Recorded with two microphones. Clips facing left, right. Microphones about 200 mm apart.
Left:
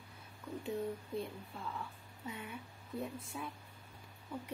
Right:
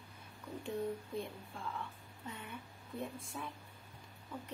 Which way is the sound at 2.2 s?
10° left (ahead or behind).